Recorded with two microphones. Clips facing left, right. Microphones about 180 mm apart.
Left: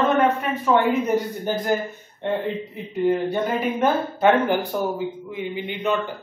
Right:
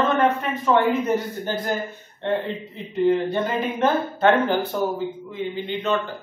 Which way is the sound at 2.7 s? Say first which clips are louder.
Right 3 dB; 10° left (ahead or behind).